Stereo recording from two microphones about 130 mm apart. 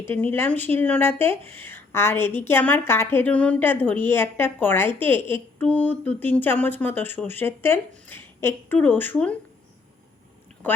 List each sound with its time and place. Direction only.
0.0 s speech: 15° left (ahead or behind)